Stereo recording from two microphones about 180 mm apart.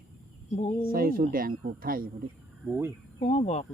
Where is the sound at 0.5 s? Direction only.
35° left (ahead or behind).